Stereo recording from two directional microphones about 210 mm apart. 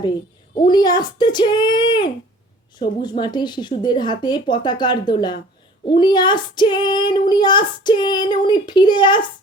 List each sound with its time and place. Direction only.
0.7 s child singing: 20° left (ahead or behind)